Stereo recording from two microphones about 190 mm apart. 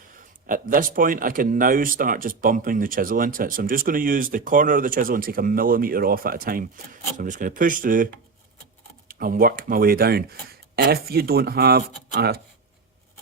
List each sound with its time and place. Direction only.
0.4 s speech: 45° right (ahead or behind)